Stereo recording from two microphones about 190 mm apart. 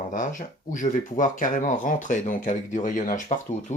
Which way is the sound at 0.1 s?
40° left (ahead or behind).